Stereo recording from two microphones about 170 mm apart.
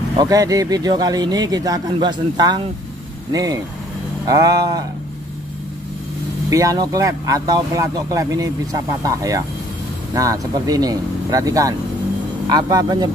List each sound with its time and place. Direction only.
0.2 s speech: 20° right (ahead or behind)
6.5 s speech: 20° right (ahead or behind)